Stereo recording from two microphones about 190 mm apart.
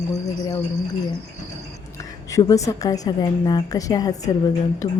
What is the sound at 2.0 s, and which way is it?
A woman's voice, 15° left (ahead or behind).